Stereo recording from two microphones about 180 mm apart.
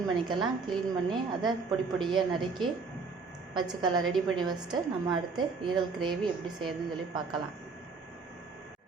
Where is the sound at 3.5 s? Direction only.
25° right (ahead or behind).